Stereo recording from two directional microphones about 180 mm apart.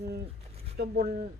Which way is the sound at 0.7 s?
60° right (ahead or behind).